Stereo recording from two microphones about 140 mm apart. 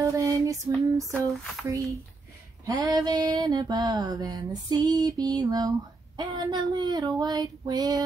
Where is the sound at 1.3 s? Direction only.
Centre (ahead or behind).